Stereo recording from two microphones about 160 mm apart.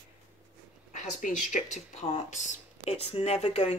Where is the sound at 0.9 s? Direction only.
50° left (ahead or behind).